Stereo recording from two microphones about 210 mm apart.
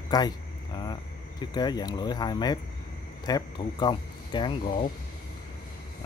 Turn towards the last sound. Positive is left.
turn(degrees=25)  # may be behind; listen again after turning